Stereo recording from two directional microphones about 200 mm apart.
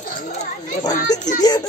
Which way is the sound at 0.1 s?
40° left (ahead or behind).